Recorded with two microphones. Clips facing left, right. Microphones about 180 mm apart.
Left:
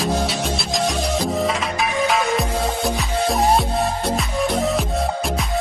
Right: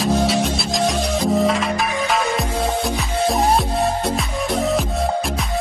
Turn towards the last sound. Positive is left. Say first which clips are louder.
# right 1 dB
turn(degrees=0)  # may be behind; listen again after turning